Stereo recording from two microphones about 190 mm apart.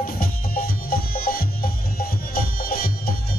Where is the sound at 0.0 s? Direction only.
50° left (ahead or behind).